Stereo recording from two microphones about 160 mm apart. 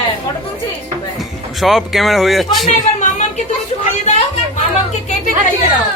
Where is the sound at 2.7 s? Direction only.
50° left (ahead or behind).